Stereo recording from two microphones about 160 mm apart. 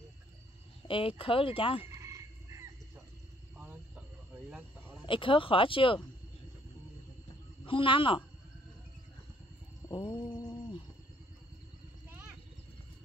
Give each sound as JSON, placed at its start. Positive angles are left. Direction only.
{"t": 0.8, "sound": "speech", "side_deg": 35}
{"t": 1.9, "sound": "chicken", "side_deg": -20}
{"t": 3.5, "sound": "a sound", "side_deg": -10}
{"t": 5.0, "sound": "speech", "side_deg": 30}
{"t": 7.6, "sound": "speech", "side_deg": 35}
{"t": 9.8, "sound": "music", "side_deg": 30}